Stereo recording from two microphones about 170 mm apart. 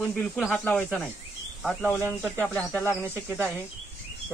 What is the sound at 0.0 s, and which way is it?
Speech, centre (ahead or behind).